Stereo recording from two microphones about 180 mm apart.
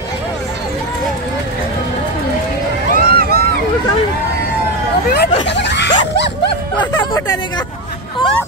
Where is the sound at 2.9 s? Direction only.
55° right (ahead or behind).